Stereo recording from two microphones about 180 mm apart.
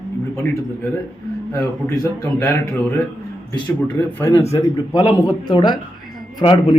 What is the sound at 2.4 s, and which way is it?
A man's voice, 15° left (ahead or behind).